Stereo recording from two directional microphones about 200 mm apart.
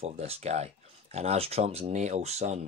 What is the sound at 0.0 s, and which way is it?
Speech, 30° right (ahead or behind).